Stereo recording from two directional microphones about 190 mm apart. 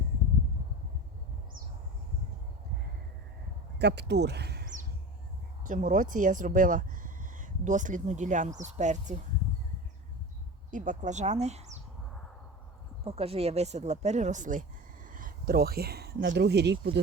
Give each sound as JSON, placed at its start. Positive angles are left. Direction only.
{"t": 3.8, "sound": "speech", "side_deg": -60}
{"t": 5.6, "sound": "speech", "side_deg": -45}
{"t": 10.7, "sound": "speech", "side_deg": -40}
{"t": 13.1, "sound": "speech", "side_deg": -30}